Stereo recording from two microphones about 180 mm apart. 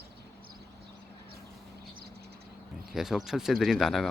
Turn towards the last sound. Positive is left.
turn(degrees=0)  # may be behind; listen again after turning